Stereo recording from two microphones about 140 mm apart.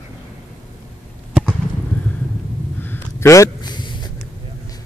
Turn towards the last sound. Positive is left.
turn(degrees=35)  # may be behind; listen again after turning